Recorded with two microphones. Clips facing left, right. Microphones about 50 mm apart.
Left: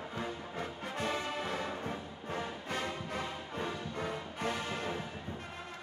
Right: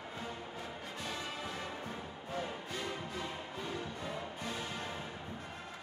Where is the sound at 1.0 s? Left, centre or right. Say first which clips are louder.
Left 7 dB; left.